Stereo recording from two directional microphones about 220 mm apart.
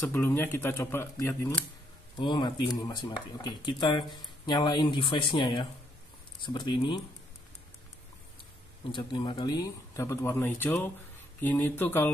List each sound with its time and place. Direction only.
0.0 s speech: 10° left (ahead or behind)
8.9 s speech: 20° left (ahead or behind)